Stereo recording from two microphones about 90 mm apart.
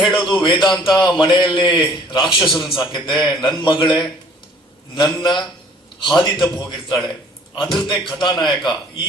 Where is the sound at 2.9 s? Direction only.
60° left (ahead or behind).